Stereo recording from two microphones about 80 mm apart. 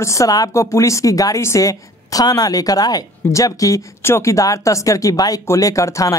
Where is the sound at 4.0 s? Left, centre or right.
Left.